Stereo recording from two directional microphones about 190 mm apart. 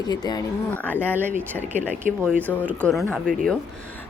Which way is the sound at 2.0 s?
45° right (ahead or behind).